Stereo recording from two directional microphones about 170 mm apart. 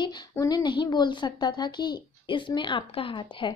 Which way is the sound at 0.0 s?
25° left (ahead or behind).